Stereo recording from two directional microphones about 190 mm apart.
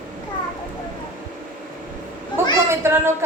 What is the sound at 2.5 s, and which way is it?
Speech, 15° right (ahead or behind).